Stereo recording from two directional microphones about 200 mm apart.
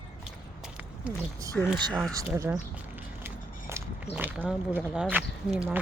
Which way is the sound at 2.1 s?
15° right (ahead or behind).